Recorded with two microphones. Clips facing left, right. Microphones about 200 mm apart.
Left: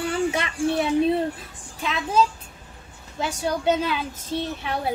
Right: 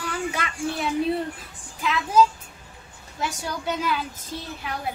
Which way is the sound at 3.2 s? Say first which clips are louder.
Left 4 dB; 25° left (ahead or behind).